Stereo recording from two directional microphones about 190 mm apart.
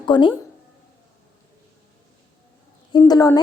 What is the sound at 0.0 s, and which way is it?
Speech, 25° left (ahead or behind).